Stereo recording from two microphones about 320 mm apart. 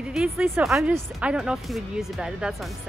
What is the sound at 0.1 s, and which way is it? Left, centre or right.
A woman's voice, centre.